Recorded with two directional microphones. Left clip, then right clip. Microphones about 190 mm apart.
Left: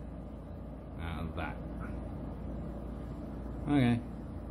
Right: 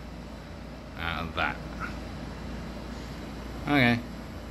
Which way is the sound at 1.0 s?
5° left (ahead or behind).